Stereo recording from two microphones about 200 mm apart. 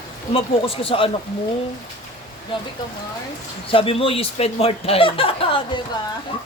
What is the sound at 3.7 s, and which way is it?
Speech, 25° left (ahead or behind).